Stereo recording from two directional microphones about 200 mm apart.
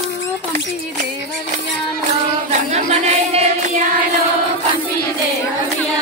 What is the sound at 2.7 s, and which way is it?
Music, 35° right (ahead or behind).